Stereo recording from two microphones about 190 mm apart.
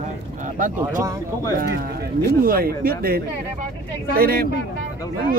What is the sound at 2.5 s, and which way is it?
Speech, 50° right (ahead or behind).